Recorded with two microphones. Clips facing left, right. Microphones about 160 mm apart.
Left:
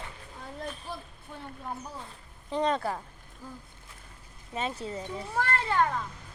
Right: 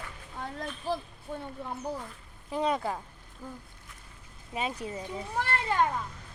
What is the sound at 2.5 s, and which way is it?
Speech, 10° right (ahead or behind).